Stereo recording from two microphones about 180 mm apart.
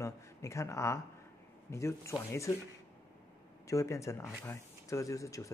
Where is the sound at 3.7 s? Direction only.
15° left (ahead or behind).